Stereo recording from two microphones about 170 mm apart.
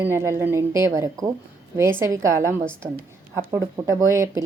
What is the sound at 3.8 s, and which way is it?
Speech, 15° right (ahead or behind).